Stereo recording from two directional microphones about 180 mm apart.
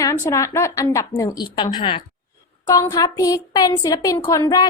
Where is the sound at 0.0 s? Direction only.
15° left (ahead or behind).